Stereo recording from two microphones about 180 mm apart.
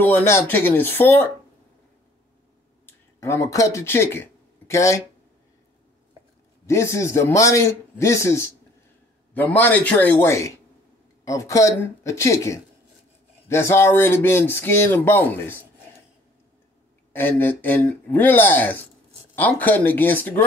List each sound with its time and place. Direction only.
0.0 s speech: 10° left (ahead or behind)
2.9 s speech: 15° left (ahead or behind)
6.6 s speech: 15° left (ahead or behind)
17.1 s speech: 10° left (ahead or behind)